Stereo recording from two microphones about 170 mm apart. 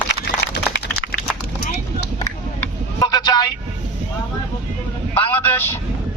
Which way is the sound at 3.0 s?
25° left (ahead or behind).